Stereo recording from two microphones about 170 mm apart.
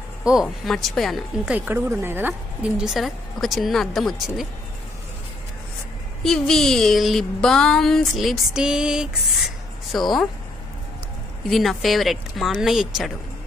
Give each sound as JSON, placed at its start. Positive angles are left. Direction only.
{"t": 0.2, "sound": "speech", "side_deg": -5}
{"t": 6.2, "sound": "speech", "side_deg": 5}
{"t": 11.4, "sound": "speech", "side_deg": 0}